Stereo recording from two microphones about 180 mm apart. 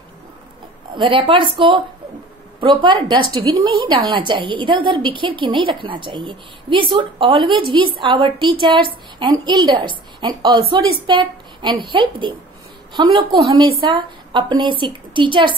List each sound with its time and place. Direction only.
0.9 s a woman's voice: 30° right (ahead or behind)